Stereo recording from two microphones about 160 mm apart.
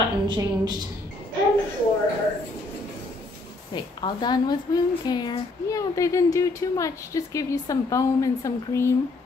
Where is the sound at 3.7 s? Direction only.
30° left (ahead or behind).